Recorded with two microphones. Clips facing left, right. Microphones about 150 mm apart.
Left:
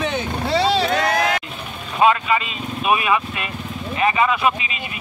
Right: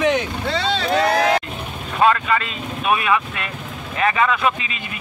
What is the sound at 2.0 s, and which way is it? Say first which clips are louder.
Speech: even; 15° left (ahead or behind).